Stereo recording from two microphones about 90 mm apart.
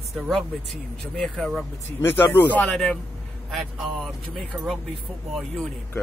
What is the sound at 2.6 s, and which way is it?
Speech, 5° left (ahead or behind).